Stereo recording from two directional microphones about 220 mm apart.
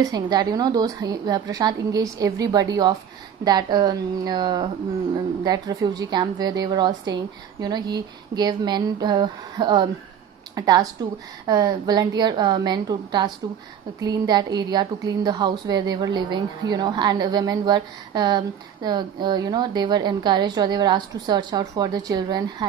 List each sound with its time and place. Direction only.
0.0 s a woman's voice: 20° right (ahead or behind)